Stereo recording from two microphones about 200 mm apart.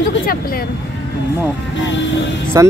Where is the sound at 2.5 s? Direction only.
15° right (ahead or behind).